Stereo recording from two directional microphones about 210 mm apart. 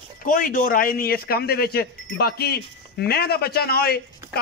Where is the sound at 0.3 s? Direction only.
40° left (ahead or behind).